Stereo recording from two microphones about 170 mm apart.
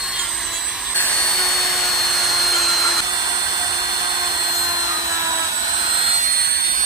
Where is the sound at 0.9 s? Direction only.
10° left (ahead or behind).